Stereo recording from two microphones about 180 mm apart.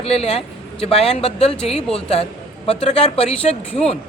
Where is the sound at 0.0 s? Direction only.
30° left (ahead or behind).